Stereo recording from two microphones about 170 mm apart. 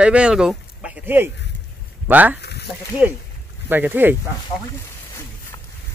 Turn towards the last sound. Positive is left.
turn(degrees=-10)  # may be behind; listen again after turning